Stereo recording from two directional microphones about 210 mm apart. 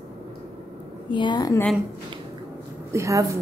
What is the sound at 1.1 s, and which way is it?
Speech, 20° left (ahead or behind).